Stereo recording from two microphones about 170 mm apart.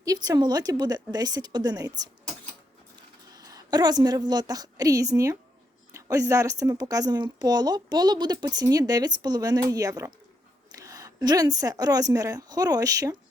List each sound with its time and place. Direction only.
0.0 s speech: 20° right (ahead or behind)
3.3 s a woman's voice: 20° right (ahead or behind)